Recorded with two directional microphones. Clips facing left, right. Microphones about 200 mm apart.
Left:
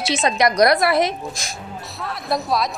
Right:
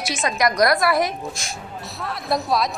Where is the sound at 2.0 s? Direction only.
Centre (ahead or behind).